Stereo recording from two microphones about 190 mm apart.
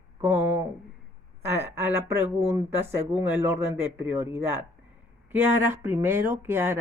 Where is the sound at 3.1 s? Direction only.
10° right (ahead or behind).